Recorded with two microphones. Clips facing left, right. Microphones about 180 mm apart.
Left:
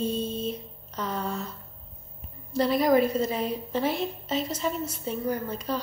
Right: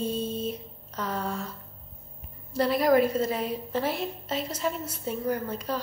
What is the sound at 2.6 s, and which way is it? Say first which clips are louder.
A woman's voice: even; 5° right (ahead or behind).